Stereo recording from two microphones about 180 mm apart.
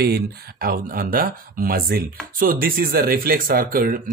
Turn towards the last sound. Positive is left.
turn(degrees=-55)  # may be behind; listen again after turning